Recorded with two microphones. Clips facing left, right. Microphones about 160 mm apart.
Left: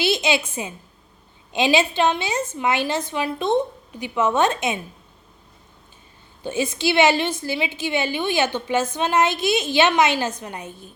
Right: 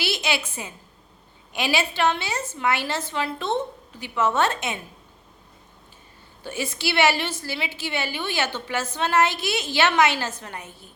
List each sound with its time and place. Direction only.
0.0 s a woman's voice: 20° left (ahead or behind)
6.4 s a woman's voice: 20° left (ahead or behind)